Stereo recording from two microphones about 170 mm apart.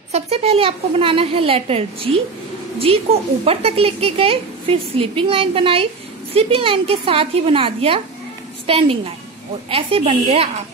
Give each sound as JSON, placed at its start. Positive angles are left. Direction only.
{"t": 0.1, "sound": "a woman's voice", "side_deg": -35}
{"t": 3.4, "sound": "a woman's voice", "side_deg": -35}